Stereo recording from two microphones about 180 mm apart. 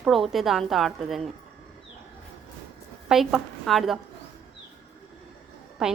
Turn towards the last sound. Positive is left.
turn(degrees=0)  # may be behind; listen again after turning